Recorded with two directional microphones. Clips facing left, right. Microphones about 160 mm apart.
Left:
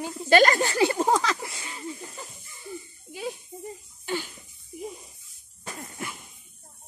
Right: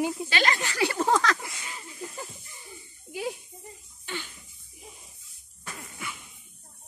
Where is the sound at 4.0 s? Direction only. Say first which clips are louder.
Left 7 dB; 40° left (ahead or behind).